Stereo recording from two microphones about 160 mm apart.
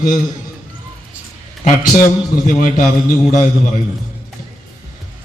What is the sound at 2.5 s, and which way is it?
Speech, 55° left (ahead or behind).